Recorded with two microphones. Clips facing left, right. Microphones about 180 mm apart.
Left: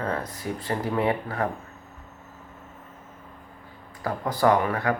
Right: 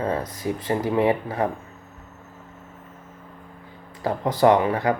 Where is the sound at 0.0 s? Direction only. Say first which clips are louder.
Right 4 dB; 20° right (ahead or behind).